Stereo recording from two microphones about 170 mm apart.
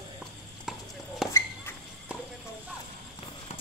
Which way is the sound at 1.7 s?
15° left (ahead or behind).